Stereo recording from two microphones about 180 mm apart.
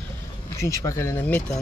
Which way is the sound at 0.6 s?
15° left (ahead or behind).